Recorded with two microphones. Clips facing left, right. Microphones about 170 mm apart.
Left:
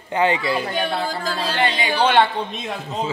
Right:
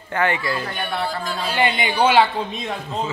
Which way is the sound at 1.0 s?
90° left.